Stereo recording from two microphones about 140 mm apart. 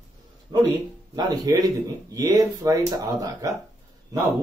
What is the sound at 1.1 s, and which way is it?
Speech, 30° right (ahead or behind).